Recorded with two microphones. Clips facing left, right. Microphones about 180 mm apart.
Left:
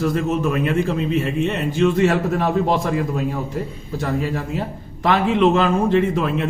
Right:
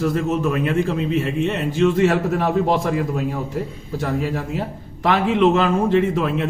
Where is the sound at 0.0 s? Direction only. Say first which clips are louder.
Even; centre (ahead or behind).